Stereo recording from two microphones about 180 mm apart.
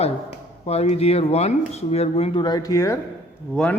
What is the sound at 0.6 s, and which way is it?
Speech, 35° left (ahead or behind).